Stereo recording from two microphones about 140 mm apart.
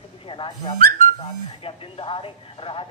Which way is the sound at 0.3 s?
35° left (ahead or behind).